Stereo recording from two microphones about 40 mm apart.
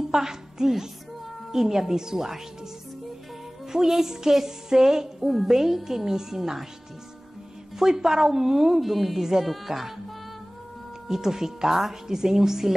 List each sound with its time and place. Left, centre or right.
0.1 s a woman's voice: centre
3.7 s a woman's voice: centre
7.8 s a woman's voice: centre
11.1 s a woman's voice: centre